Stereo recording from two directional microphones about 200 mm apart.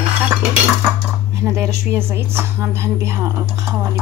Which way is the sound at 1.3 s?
15° right (ahead or behind).